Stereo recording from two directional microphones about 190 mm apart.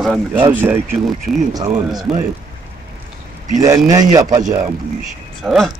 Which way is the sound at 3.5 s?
20° right (ahead or behind).